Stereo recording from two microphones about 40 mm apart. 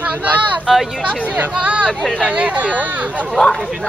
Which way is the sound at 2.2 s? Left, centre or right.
Right.